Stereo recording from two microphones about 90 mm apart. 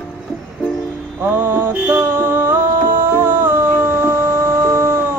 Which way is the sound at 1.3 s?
25° right (ahead or behind).